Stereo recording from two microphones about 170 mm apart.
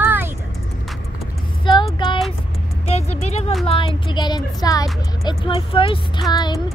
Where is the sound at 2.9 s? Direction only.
40° left (ahead or behind).